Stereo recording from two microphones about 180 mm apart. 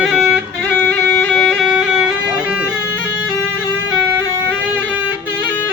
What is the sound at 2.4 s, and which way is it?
Bagpipes, 5° right (ahead or behind).